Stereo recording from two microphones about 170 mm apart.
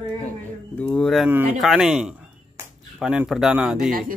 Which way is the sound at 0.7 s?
5° left (ahead or behind).